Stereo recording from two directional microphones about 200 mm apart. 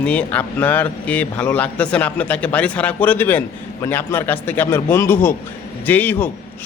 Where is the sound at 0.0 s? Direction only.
5° left (ahead or behind).